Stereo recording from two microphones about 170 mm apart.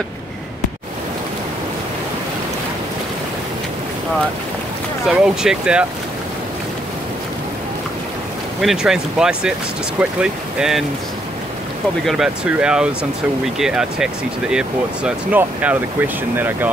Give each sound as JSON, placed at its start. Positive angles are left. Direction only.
{"t": 5.0, "sound": "speech", "side_deg": -5}
{"t": 8.5, "sound": "speech", "side_deg": 0}
{"t": 12.1, "sound": "speech", "side_deg": -5}